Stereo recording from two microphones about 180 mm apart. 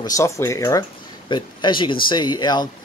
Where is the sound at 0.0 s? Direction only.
15° left (ahead or behind).